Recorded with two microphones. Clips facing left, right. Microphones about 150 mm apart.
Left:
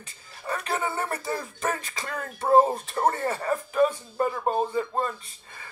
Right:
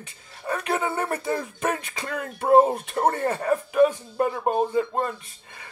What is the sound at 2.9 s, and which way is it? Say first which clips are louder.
Speech: right 2 dB; 55° right (ahead or behind).